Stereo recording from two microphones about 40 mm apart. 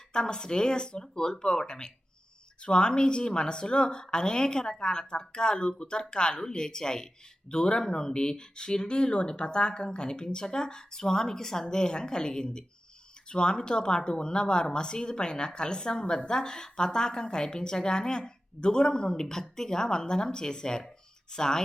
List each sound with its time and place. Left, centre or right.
0.1 s speech: left